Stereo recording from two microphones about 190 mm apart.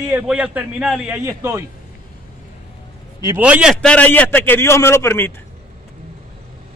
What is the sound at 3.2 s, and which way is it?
A man's voice, 10° right (ahead or behind).